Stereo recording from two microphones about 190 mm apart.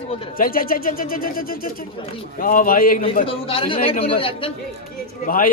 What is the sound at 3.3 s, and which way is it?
Speech, 30° left (ahead or behind).